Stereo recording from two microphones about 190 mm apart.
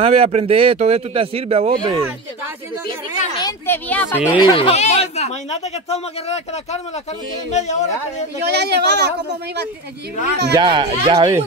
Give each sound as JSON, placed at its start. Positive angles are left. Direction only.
{"t": 0.0, "sound": "speech", "side_deg": -30}
{"t": 3.3, "sound": "speech", "side_deg": 15}
{"t": 4.4, "sound": "speech", "side_deg": 25}
{"t": 8.5, "sound": "speech", "side_deg": -60}
{"t": 10.6, "sound": "speech", "side_deg": -25}